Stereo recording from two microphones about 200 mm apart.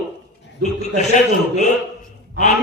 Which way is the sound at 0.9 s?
35° left (ahead or behind).